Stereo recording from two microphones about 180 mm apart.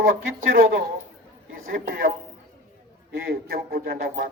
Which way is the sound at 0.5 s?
55° right (ahead or behind).